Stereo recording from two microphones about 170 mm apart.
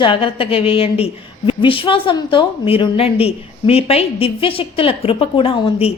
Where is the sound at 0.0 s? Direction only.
30° left (ahead or behind).